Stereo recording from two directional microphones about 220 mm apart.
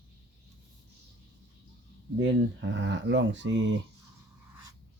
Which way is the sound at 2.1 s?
55° right (ahead or behind).